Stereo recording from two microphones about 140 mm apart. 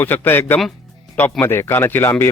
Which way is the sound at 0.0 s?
15° left (ahead or behind).